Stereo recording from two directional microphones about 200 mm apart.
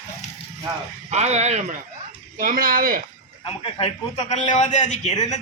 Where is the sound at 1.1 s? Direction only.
35° right (ahead or behind).